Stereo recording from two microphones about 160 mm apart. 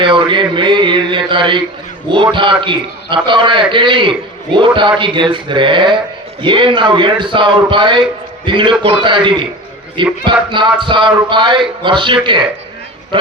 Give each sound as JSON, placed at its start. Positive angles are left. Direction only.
{"t": 0.0, "sound": "a man's voice", "side_deg": -30}